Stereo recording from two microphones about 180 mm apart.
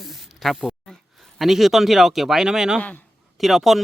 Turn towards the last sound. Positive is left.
turn(degrees=0)  # may be behind; listen again after turning